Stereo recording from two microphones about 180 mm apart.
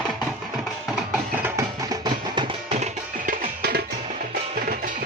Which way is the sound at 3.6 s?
55° right (ahead or behind).